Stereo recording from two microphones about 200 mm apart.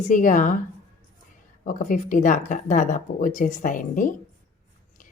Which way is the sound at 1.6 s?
40° left (ahead or behind).